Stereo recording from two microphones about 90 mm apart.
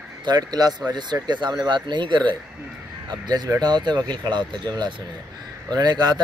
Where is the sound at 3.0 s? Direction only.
50° right (ahead or behind).